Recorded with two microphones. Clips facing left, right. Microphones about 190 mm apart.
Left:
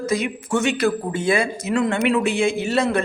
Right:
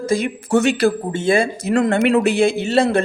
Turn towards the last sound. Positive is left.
turn(degrees=-30)  # may be behind; listen again after turning